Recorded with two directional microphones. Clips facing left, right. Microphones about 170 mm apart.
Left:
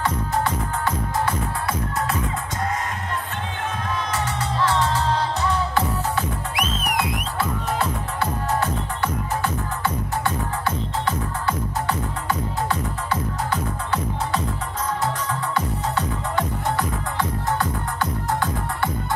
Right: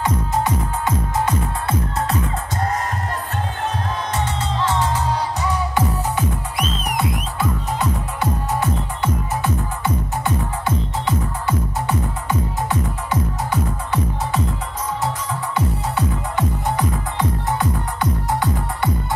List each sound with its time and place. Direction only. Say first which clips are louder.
0.0 s music: right 2 dB; 15° right (ahead or behind)
4.1 s music: right 2 dB; 25° right (ahead or behind)
8.2 s music: even; 15° right (ahead or behind)
15.5 s music: right 3 dB; 15° right (ahead or behind)